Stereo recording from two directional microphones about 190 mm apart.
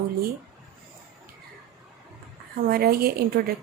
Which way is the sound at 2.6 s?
50° right (ahead or behind).